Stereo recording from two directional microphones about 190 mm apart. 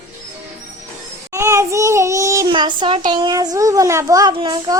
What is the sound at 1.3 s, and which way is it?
A child's voice, 15° right (ahead or behind).